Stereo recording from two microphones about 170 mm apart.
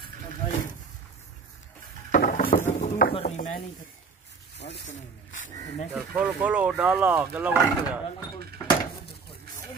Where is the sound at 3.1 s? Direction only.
40° left (ahead or behind).